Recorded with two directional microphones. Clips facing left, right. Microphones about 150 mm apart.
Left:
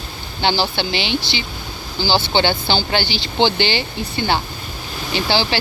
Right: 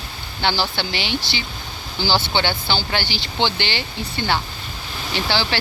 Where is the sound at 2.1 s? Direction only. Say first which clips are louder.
Left 4 dB; 30° left (ahead or behind).